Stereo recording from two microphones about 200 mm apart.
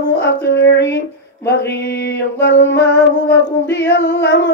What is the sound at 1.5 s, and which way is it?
Mantra, 55° left (ahead or behind).